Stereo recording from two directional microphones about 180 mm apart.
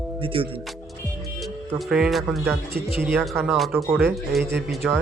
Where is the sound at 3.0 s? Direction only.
10° right (ahead or behind).